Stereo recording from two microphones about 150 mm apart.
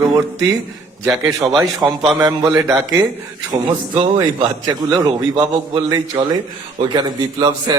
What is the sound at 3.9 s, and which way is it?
A man's voice, 30° right (ahead or behind).